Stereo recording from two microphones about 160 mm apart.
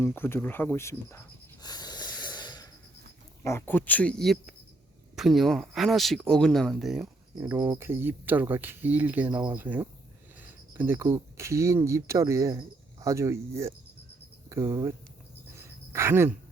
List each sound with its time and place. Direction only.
0.0 s speech: 15° left (ahead or behind)
1.6 s snort: 25° left (ahead or behind)
3.4 s speech: 15° left (ahead or behind); by 7.1 s centre (ahead or behind)
7.3 s speech: 20° right (ahead or behind)
15.5 s a sound: 15° right (ahead or behind)